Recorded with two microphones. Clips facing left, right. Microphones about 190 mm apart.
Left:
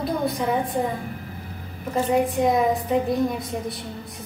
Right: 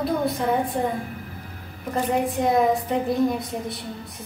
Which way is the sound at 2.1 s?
Centre (ahead or behind).